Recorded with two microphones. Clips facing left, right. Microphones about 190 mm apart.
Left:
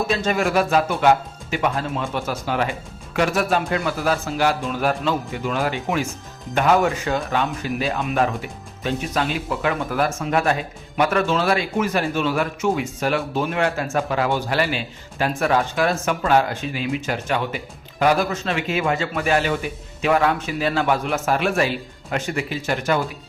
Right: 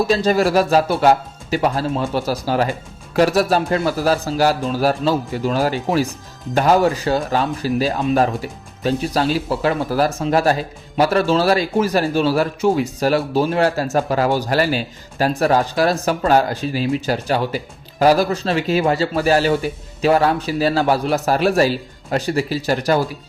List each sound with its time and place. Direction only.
0.1 s speech: 35° right (ahead or behind)